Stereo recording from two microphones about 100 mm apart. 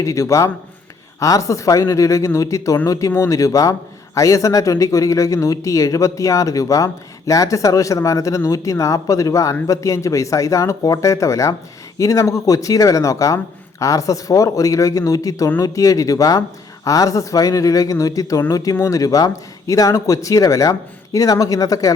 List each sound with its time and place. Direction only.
0.0 s a man's voice: 30° left (ahead or behind)